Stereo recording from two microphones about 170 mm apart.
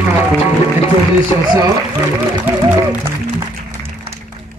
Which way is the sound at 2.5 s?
10° right (ahead or behind).